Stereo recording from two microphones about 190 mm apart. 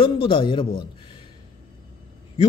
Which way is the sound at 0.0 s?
25° left (ahead or behind).